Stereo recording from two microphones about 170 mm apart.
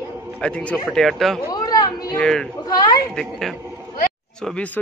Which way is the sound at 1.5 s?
20° left (ahead or behind).